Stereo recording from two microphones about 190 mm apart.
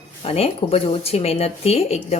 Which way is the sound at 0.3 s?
30° left (ahead or behind).